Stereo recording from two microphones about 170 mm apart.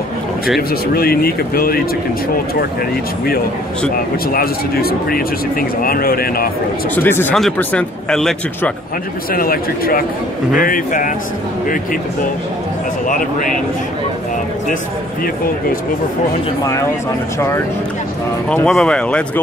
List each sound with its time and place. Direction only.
0.6 s speech: 60° left (ahead or behind)
4.3 s speech: 60° left (ahead or behind)
7.0 s speech: 10° left (ahead or behind)
9.3 s speech: 60° left (ahead or behind)
18.5 s speech: 5° left (ahead or behind)